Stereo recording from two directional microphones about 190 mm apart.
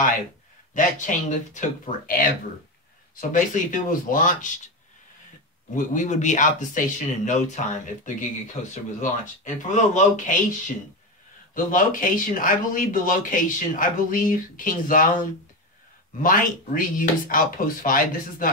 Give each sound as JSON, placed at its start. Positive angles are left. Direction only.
{"t": 0.7, "sound": "speech", "side_deg": 40}
{"t": 5.8, "sound": "speech", "side_deg": 40}
{"t": 11.5, "sound": "speech", "side_deg": 45}
{"t": 16.2, "sound": "speech", "side_deg": 45}